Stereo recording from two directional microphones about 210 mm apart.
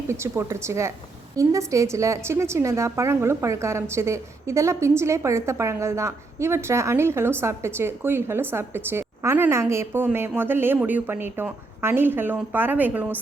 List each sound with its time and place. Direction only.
0.1 s a woman's voice: 15° right (ahead or behind)